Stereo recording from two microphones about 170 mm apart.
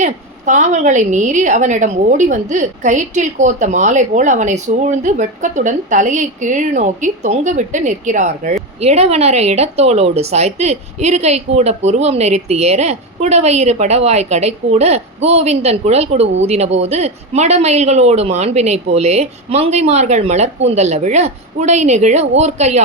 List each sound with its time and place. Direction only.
0.0 s a woman's voice: 45° right (ahead or behind)